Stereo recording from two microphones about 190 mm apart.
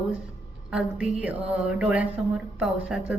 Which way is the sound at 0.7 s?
5° right (ahead or behind).